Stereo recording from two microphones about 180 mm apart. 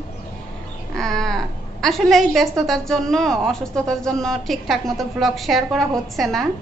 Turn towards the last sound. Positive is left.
turn(degrees=0)  # may be behind; listen again after turning